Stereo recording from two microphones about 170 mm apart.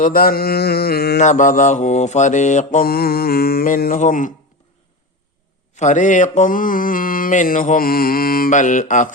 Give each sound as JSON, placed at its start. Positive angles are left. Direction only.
{"t": 0.0, "sound": "mantra", "side_deg": 60}
{"t": 1.2, "sound": "mantra", "side_deg": 45}
{"t": 5.7, "sound": "mantra", "side_deg": 45}